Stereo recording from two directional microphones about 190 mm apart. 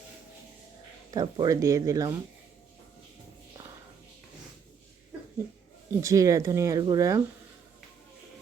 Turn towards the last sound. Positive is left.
turn(degrees=-20)  # may be behind; listen again after turning